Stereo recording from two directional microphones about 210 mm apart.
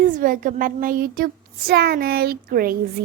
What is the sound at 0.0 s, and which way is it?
A woman's voice, 40° right (ahead or behind).